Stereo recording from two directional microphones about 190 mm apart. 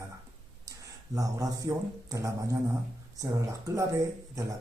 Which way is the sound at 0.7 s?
15° right (ahead or behind).